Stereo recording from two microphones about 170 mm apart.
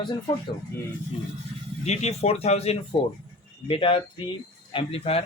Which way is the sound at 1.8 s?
40° left (ahead or behind).